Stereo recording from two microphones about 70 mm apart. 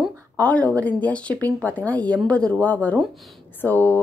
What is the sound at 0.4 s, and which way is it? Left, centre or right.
A woman's voice, centre.